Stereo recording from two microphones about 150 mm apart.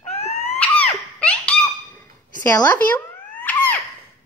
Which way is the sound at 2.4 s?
20° left (ahead or behind).